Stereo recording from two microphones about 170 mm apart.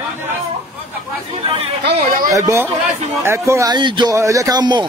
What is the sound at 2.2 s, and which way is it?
Speech, 20° right (ahead or behind).